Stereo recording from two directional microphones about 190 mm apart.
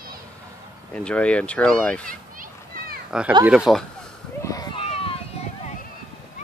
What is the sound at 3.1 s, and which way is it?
Speech, 5° right (ahead or behind).